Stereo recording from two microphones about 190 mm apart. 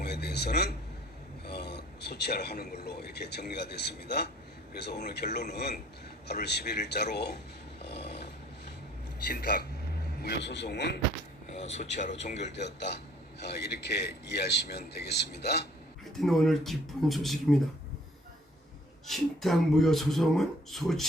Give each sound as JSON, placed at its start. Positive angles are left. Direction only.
{"t": 0.0, "sound": "a man's voice", "side_deg": 60}
{"t": 7.8, "sound": "dog", "side_deg": 60}
{"t": 9.2, "sound": "a man's voice", "side_deg": 55}
{"t": 10.2, "sound": "a man's voice", "side_deg": 65}
{"t": 11.5, "sound": "speech", "side_deg": 35}
{"t": 12.5, "sound": "a man's voice", "side_deg": 65}
{"t": 16.1, "sound": "speech", "side_deg": 0}
{"t": 19.0, "sound": "speech", "side_deg": 0}